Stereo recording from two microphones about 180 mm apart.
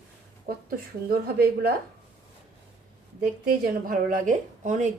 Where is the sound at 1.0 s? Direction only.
55° right (ahead or behind).